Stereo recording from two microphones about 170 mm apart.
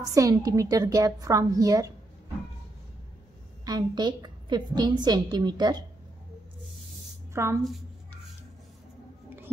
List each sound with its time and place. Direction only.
0.1 s a woman's voice: 20° right (ahead or behind)
3.6 s a woman's voice: 25° right (ahead or behind)
7.3 s a woman's voice: 15° right (ahead or behind)